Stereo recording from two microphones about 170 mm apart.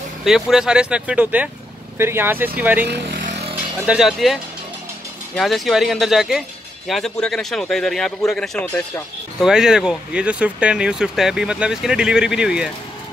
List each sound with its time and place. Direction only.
0.2 s speech: centre (ahead or behind)
2.9 s speech: 70° right (ahead or behind)
3.8 s speech: 5° right (ahead or behind)
9.4 s speech: 5° right (ahead or behind)